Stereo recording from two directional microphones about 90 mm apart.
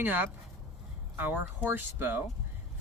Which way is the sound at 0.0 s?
20° right (ahead or behind).